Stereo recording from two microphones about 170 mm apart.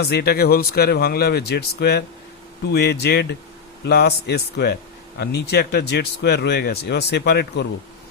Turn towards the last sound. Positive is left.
turn(degrees=80)